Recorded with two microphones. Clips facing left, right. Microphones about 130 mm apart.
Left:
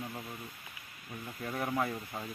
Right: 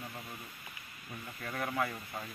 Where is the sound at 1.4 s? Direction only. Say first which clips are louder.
Left 2 dB; 10° left (ahead or behind).